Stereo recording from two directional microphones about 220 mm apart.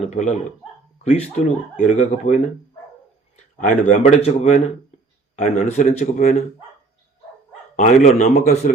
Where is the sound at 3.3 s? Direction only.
35° left (ahead or behind).